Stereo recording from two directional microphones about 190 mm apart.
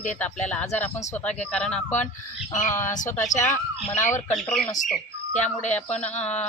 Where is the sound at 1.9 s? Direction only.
40° left (ahead or behind).